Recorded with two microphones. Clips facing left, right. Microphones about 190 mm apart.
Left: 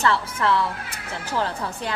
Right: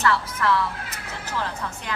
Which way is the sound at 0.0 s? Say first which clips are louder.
Left 1 dB; 30° left (ahead or behind).